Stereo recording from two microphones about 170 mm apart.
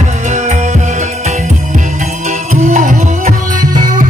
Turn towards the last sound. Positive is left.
turn(degrees=-50)  # may be behind; listen again after turning